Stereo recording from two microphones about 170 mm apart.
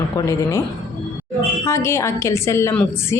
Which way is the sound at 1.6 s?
15° left (ahead or behind).